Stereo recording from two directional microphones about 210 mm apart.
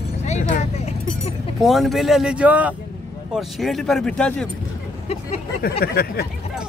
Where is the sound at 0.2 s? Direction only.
35° left (ahead or behind).